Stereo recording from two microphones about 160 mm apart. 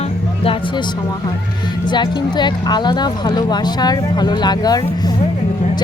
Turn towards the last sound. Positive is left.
turn(degrees=25)  # may be behind; listen again after turning